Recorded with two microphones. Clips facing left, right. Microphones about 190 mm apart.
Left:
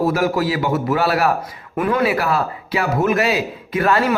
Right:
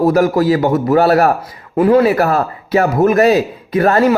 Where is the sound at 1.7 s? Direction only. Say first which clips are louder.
Right 8 dB; 30° right (ahead or behind).